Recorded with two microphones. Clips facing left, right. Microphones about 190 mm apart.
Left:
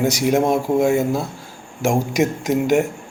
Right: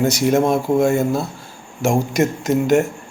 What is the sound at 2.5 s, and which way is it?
Speech, 15° left (ahead or behind).